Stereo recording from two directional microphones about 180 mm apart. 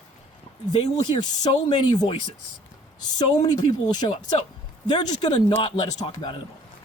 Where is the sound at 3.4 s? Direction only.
25° left (ahead or behind).